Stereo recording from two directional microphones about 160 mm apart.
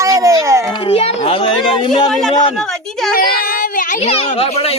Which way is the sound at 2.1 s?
Centre (ahead or behind).